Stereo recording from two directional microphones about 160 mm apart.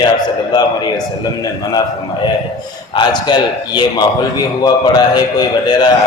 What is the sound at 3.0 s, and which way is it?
A man's voice, 25° left (ahead or behind).